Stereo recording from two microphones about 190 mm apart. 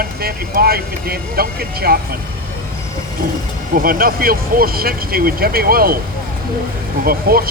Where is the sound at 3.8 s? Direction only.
50° right (ahead or behind).